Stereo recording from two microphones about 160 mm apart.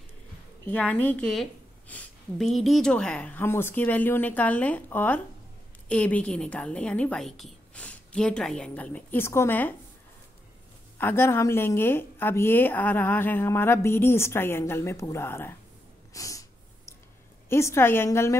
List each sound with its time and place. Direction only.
0.7 s a woman's voice: 10° left (ahead or behind)
11.0 s a woman's voice: 15° left (ahead or behind)
16.1 s snort: 20° left (ahead or behind)
17.5 s a woman's voice: 15° left (ahead or behind)